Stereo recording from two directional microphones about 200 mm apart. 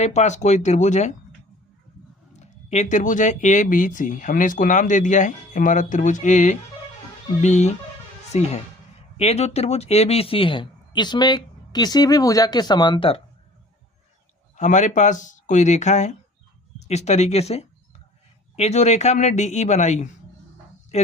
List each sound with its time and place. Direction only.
0.0 s speech: 35° left (ahead or behind)
2.3 s speech: 35° left (ahead or behind)
14.5 s speech: 35° left (ahead or behind)